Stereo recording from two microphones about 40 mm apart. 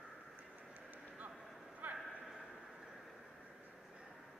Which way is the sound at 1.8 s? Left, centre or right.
Right.